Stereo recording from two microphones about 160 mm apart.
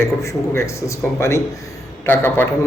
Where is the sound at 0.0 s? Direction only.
20° left (ahead or behind).